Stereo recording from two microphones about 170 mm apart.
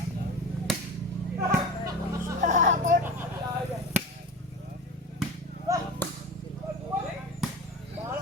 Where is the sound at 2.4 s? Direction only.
50° right (ahead or behind).